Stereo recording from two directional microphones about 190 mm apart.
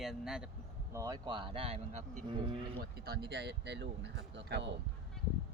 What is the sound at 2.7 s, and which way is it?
Speech, 60° right (ahead or behind).